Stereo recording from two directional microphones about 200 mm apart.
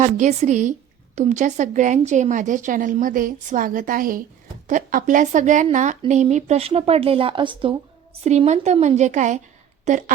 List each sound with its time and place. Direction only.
0.0 s a woman's voice: 35° right (ahead or behind)